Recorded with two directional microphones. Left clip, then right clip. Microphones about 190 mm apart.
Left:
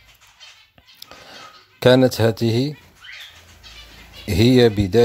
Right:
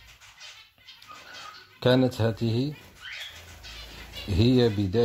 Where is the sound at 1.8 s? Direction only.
35° left (ahead or behind).